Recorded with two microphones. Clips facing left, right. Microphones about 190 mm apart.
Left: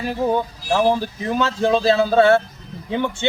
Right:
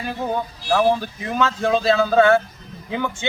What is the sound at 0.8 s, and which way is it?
A man's voice, 30° left (ahead or behind).